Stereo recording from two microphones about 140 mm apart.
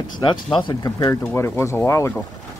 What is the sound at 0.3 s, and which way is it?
Speech, 35° left (ahead or behind).